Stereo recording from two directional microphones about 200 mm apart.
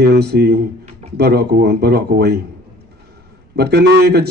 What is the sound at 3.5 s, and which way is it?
Speech, 55° right (ahead or behind).